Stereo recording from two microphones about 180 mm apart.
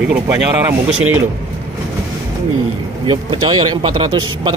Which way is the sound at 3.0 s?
30° right (ahead or behind).